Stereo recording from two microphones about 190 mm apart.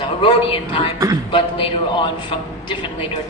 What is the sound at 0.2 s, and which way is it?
Speech, 25° left (ahead or behind).